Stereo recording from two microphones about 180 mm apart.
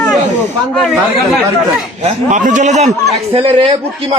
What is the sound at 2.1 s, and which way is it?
A man's voice, 45° right (ahead or behind).